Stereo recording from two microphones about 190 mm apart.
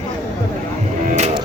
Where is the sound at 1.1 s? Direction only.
35° right (ahead or behind).